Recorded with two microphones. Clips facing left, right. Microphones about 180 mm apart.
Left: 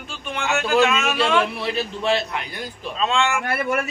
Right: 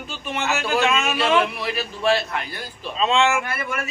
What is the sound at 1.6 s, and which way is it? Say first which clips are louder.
A man's voice: even; 25° left (ahead or behind).